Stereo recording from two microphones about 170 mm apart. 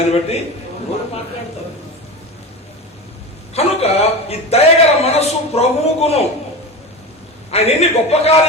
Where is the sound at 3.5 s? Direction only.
35° left (ahead or behind).